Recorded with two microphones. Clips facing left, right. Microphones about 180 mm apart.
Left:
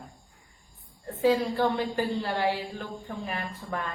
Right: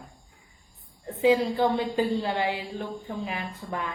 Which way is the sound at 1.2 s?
20° right (ahead or behind).